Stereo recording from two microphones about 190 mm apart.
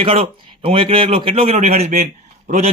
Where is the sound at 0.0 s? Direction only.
30° right (ahead or behind).